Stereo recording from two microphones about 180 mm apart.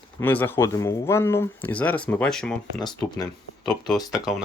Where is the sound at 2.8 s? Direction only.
25° left (ahead or behind).